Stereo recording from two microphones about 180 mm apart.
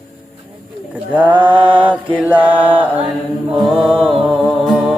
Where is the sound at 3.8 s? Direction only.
5° right (ahead or behind).